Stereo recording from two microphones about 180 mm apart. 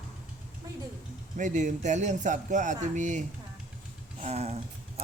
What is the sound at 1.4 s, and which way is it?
Speech, 45° right (ahead or behind).